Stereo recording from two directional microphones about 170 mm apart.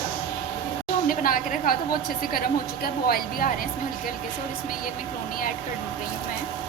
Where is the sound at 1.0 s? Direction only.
55° left (ahead or behind).